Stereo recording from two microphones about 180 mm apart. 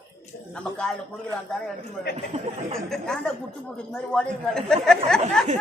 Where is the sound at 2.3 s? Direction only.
40° right (ahead or behind).